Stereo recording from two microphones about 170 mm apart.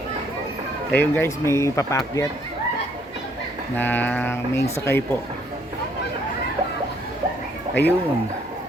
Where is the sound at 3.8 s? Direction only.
10° left (ahead or behind).